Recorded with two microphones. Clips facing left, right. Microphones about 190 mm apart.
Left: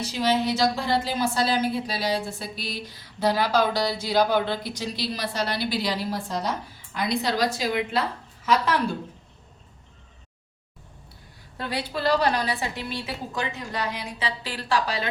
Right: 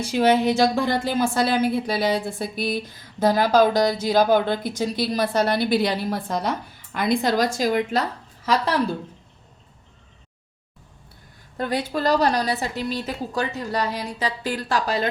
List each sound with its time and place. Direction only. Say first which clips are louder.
0.1 s a woman's voice: right 6 dB; 55° right (ahead or behind); by 8.8 s 35° right (ahead or behind)
11.5 s a woman's voice: right 5 dB; 50° right (ahead or behind)